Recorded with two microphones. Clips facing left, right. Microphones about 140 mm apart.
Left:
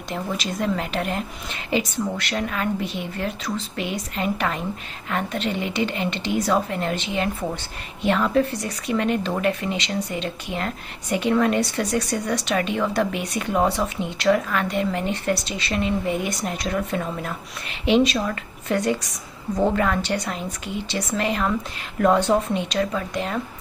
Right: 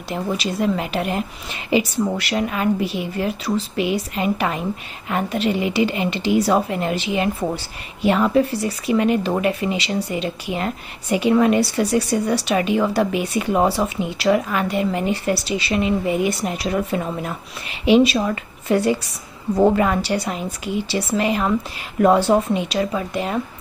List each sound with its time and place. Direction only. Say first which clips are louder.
0.1 s a woman's voice: right 4 dB; 5° right (ahead or behind)
19.0 s a woman's voice: right 4 dB; 30° right (ahead or behind)
19.7 s a woman's voice: right 3 dB; 10° right (ahead or behind)